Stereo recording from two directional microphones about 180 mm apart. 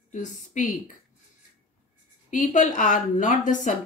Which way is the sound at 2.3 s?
45° left (ahead or behind).